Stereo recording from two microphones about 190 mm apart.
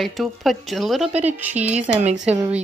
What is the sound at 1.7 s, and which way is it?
Speech, 35° right (ahead or behind).